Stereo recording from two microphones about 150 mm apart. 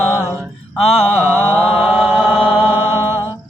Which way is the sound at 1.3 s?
10° left (ahead or behind).